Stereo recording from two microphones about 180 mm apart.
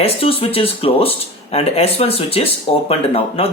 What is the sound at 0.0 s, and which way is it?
Speech, 30° left (ahead or behind).